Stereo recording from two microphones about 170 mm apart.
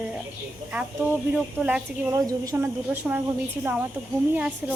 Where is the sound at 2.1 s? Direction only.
20° right (ahead or behind).